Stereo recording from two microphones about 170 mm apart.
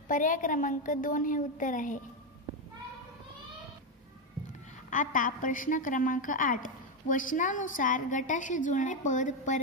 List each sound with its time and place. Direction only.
0.1 s a woman's voice: 50° left (ahead or behind)
4.5 s a woman's voice: 50° left (ahead or behind)